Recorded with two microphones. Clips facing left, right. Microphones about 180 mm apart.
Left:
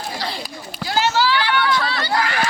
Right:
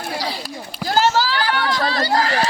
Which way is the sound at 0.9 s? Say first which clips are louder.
Right 1 dB; 45° right (ahead or behind).